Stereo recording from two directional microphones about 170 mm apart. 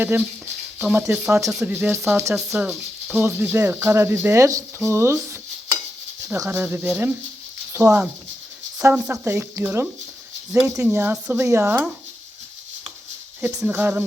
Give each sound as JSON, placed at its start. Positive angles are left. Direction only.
{"t": 0.8, "sound": "speech", "side_deg": -10}
{"t": 1.5, "sound": "speech", "side_deg": 0}
{"t": 1.7, "sound": "speech", "side_deg": -15}
{"t": 2.3, "sound": "speech", "side_deg": -5}
{"t": 13.6, "sound": "speech", "side_deg": -10}